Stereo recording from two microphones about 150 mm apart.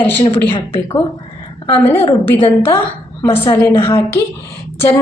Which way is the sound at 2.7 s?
15° left (ahead or behind).